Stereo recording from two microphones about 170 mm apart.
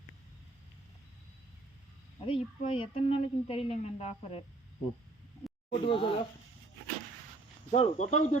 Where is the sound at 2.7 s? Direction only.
30° left (ahead or behind).